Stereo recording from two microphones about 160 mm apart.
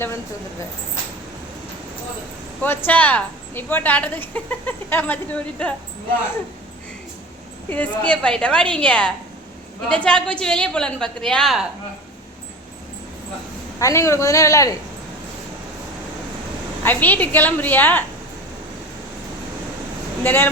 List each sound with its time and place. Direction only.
2.6 s a woman's voice: 10° left (ahead or behind)
7.7 s a woman's voice: 10° left (ahead or behind)
13.7 s a man's voice: 20° left (ahead or behind)
16.8 s a woman's voice: 10° left (ahead or behind)
20.2 s a woman's voice: 15° left (ahead or behind)